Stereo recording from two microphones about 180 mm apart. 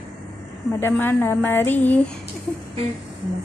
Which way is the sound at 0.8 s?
10° left (ahead or behind).